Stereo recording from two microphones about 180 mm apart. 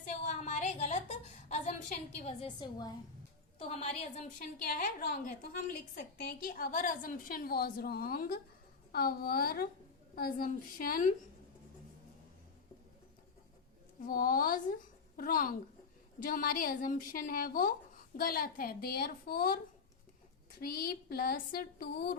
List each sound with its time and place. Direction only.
0.3 s a sound: 40° left (ahead or behind)
2.1 s a woman's voice: 35° left (ahead or behind)
3.6 s a woman's voice: 35° left (ahead or behind)
4.4 s a woman's voice: 50° left (ahead or behind)
14.0 s a woman's voice: 50° left (ahead or behind)
20.6 s speech: 55° left (ahead or behind)